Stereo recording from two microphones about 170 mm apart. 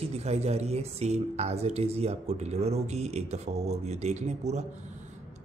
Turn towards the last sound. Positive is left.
turn(degrees=-40)  # may be behind; listen again after turning